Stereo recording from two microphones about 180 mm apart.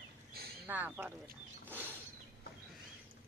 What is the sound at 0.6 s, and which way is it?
Speech, 10° right (ahead or behind).